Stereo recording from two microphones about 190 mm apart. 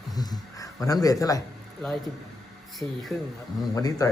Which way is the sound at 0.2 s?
20° left (ahead or behind).